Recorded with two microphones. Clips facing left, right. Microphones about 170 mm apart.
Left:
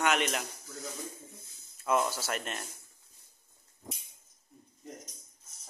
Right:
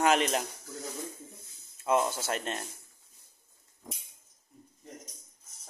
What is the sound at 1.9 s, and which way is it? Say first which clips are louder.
Speech: right 2 dB; 25° right (ahead or behind).